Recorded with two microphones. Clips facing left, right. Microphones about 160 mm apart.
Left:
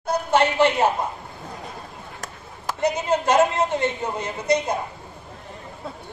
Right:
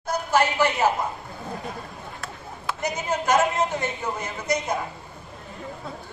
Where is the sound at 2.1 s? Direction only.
40° left (ahead or behind).